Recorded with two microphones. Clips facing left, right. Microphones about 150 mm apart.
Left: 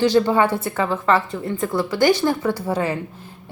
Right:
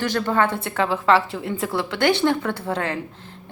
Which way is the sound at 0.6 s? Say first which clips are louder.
Even; centre (ahead or behind).